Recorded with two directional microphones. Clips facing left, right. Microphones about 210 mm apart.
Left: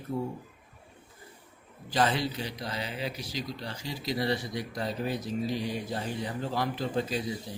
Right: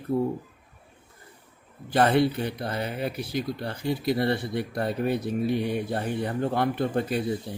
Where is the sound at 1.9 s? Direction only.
60° right (ahead or behind).